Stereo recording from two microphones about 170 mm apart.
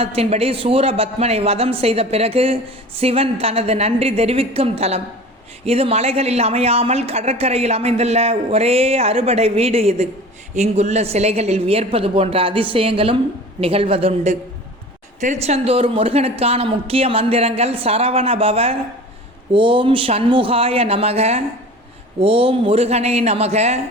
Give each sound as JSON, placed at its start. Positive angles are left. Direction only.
{"t": 0.0, "sound": "a woman's voice", "side_deg": -35}